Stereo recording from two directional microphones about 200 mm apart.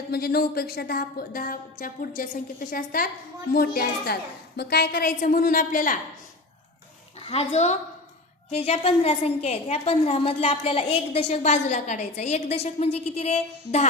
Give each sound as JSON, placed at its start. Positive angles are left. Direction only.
{"t": 0.1, "sound": "a woman's voice", "side_deg": 50}
{"t": 7.2, "sound": "a woman's voice", "side_deg": 30}